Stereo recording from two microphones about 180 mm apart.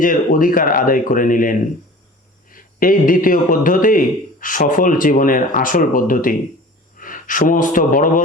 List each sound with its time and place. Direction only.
0.0 s a man's voice: 50° left (ahead or behind)